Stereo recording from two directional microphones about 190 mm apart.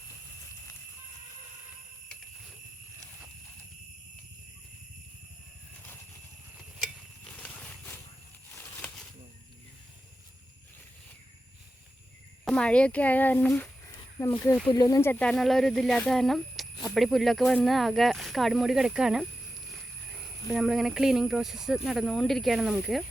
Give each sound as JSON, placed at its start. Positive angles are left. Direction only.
{"t": 7.3, "sound": "a sound", "side_deg": 5}
{"t": 12.5, "sound": "speech", "side_deg": 5}
{"t": 20.5, "sound": "speech", "side_deg": 0}